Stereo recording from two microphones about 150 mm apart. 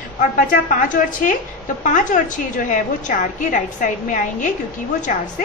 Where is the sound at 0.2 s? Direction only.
60° left (ahead or behind).